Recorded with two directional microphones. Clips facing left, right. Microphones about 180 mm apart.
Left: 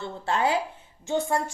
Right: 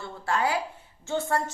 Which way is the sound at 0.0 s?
25° left (ahead or behind).